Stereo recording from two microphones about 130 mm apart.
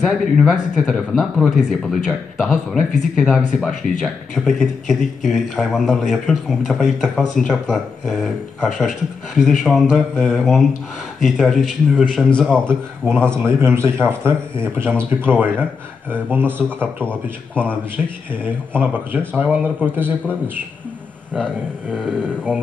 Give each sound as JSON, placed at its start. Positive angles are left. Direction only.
{"t": 0.0, "sound": "speech", "side_deg": 0}
{"t": 13.0, "sound": "speech", "side_deg": -15}
{"t": 21.8, "sound": "speech", "side_deg": -10}